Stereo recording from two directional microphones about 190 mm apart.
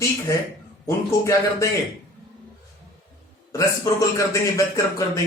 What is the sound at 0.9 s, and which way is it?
Speech, 15° left (ahead or behind).